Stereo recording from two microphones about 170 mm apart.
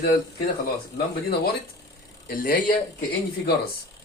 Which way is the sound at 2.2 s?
55° left (ahead or behind).